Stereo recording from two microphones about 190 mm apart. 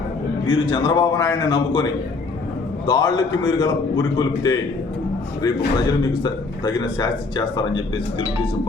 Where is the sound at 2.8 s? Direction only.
20° left (ahead or behind).